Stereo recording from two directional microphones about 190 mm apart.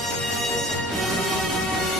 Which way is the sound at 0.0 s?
Centre (ahead or behind).